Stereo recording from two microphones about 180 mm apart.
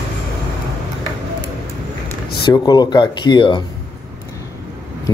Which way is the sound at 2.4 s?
25° left (ahead or behind).